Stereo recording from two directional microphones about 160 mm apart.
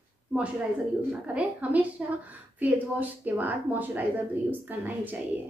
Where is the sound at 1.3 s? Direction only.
10° right (ahead or behind).